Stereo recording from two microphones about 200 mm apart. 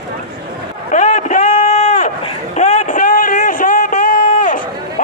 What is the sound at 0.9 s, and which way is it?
Run, 40° left (ahead or behind).